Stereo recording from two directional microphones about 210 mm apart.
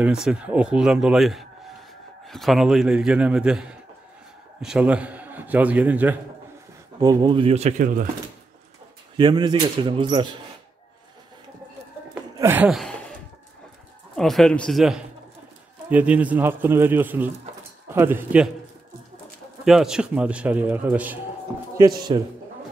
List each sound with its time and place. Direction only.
0.0 s a man's voice: 5° right (ahead or behind)
7.0 s speech: 20° right (ahead or behind); by 8.1 s 40° right (ahead or behind)
9.1 s speech: 20° right (ahead or behind)
12.1 s a sound: 10° right (ahead or behind)
14.1 s a man's voice: centre (ahead or behind)
19.6 s a man's voice: centre (ahead or behind)
21.7 s speech: 20° right (ahead or behind)